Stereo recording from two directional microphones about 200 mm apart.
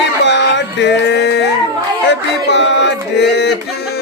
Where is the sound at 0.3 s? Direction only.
60° left (ahead or behind).